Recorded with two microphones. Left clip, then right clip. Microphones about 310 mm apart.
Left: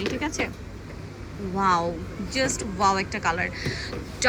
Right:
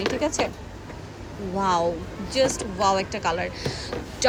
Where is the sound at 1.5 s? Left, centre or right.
Centre.